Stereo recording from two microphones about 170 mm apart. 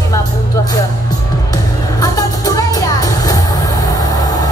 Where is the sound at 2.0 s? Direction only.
20° left (ahead or behind).